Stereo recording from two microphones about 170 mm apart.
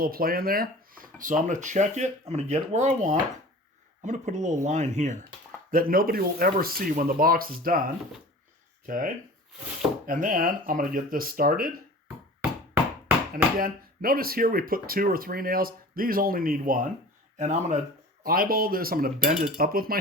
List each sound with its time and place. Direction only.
0.0 s speech: 60° right (ahead or behind); by 5.2 s 45° right (ahead or behind)
5.7 s speech: 60° right (ahead or behind)
8.9 s speech: 50° right (ahead or behind)
13.3 s speech: 60° right (ahead or behind)
17.3 s speech: 45° right (ahead or behind)
18.2 s speech: 60° right (ahead or behind)